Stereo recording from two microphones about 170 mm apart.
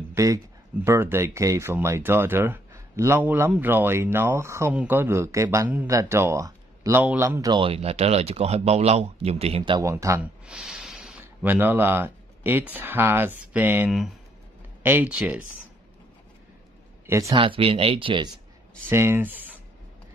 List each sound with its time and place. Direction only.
0.1 s speech: 20° right (ahead or behind)
7.5 s speech: 35° right (ahead or behind)
9.8 s speech: 20° right (ahead or behind)
10.4 s speech: 5° right (ahead or behind)
17.0 s speech: 15° right (ahead or behind)
17.4 s speech: 30° right (ahead or behind)
18.9 s speech: 15° right (ahead or behind)